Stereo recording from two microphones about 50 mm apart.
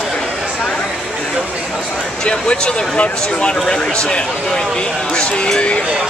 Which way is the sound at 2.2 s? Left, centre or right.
Centre.